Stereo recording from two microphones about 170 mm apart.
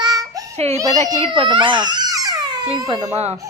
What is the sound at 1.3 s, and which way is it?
Baby cry, 30° right (ahead or behind).